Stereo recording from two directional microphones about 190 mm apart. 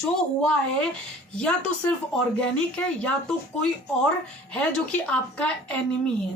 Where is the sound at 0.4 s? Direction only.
5° left (ahead or behind).